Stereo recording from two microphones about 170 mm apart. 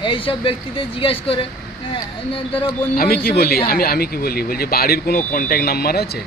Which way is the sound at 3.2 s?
65° left (ahead or behind).